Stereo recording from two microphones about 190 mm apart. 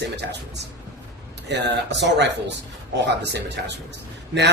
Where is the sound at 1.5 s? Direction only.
65° right (ahead or behind).